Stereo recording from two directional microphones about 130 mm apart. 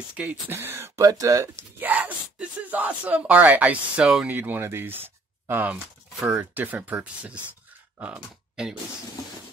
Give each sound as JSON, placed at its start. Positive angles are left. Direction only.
{"t": 0.1, "sound": "speech", "side_deg": -10}
{"t": 1.8, "sound": "speech", "side_deg": -15}
{"t": 4.4, "sound": "speech", "side_deg": -15}
{"t": 8.0, "sound": "a sound", "side_deg": -5}